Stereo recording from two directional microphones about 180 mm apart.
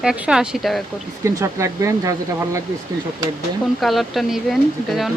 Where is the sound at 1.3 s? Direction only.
15° right (ahead or behind).